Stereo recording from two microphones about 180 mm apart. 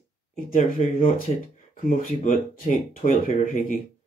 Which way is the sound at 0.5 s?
50° left (ahead or behind).